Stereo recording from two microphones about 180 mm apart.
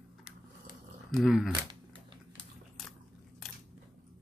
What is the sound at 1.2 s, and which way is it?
Gasp, centre (ahead or behind).